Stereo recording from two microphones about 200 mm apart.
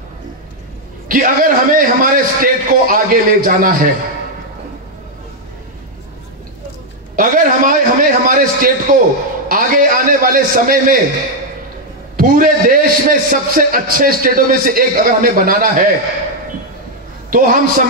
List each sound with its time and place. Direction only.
1.0 s a man's voice: 45° right (ahead or behind)
7.2 s a man's voice: 45° right (ahead or behind)
12.2 s a man's voice: 45° right (ahead or behind)
17.3 s a man's voice: 45° right (ahead or behind)